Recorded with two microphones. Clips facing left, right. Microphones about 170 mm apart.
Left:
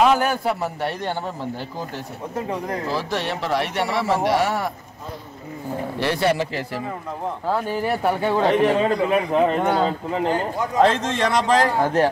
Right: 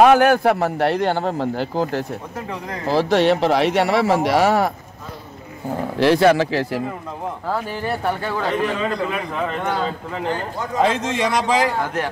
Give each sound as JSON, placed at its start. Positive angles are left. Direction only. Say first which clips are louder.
{"t": 0.0, "sound": "speech", "louder": "right 6 dB", "side_deg": -70}
{"t": 5.9, "sound": "speech", "louder": "right 7 dB", "side_deg": -90}
{"t": 8.2, "sound": "a man's voice", "louder": "left 4 dB", "side_deg": 25}
{"t": 10.8, "sound": "a man's voice", "louder": "left 1 dB", "side_deg": -10}
{"t": 11.8, "sound": "speech", "louder": "left 5 dB", "side_deg": 30}